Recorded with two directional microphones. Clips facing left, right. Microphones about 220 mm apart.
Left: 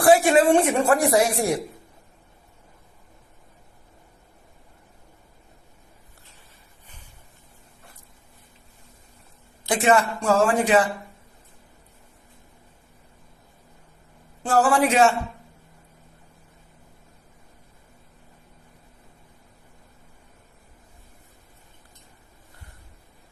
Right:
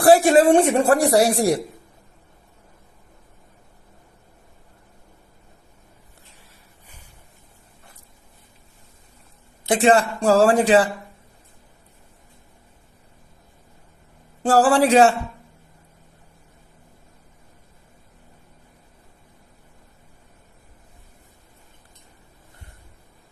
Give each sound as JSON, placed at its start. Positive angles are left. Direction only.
{"t": 0.0, "sound": "a woman's voice", "side_deg": -35}
{"t": 9.6, "sound": "a woman's voice", "side_deg": -30}
{"t": 14.4, "sound": "a woman's voice", "side_deg": -35}